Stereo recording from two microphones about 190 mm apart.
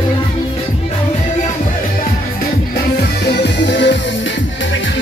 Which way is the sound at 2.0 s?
55° left (ahead or behind).